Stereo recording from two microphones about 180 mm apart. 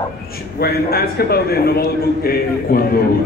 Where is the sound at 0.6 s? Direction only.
60° left (ahead or behind).